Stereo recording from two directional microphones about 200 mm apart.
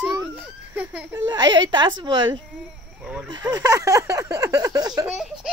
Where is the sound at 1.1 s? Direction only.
20° right (ahead or behind).